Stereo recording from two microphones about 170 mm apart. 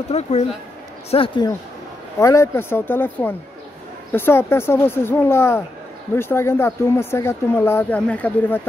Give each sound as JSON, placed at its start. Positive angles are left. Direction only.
{"t": 0.1, "sound": "speech", "side_deg": 40}
{"t": 2.1, "sound": "speech", "side_deg": 15}